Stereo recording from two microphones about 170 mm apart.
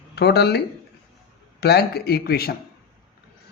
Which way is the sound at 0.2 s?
75° left (ahead or behind).